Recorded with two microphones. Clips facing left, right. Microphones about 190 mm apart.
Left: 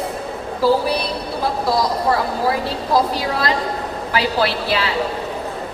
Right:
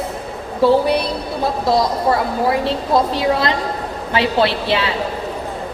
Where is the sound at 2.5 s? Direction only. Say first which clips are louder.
Right 3 dB; 25° right (ahead or behind).